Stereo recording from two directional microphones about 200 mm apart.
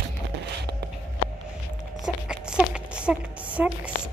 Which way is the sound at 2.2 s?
5° right (ahead or behind).